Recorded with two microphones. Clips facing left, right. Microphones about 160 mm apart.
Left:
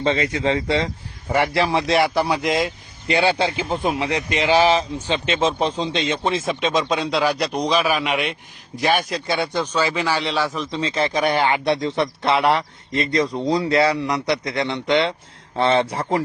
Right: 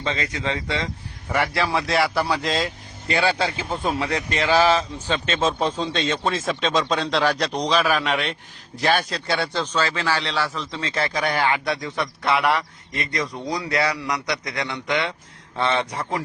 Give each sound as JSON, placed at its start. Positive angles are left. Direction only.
{"t": 0.0, "sound": "a man's voice", "side_deg": 35}